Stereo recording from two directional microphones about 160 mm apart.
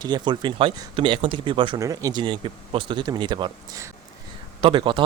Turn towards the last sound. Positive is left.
turn(degrees=-30)  # may be behind; listen again after turning